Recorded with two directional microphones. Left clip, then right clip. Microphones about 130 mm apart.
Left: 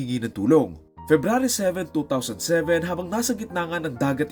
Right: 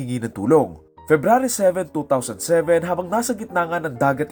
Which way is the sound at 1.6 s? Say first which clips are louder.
Right 6 dB; 25° left (ahead or behind).